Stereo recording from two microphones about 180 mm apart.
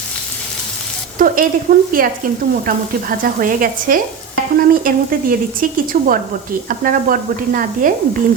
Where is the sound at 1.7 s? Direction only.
60° right (ahead or behind).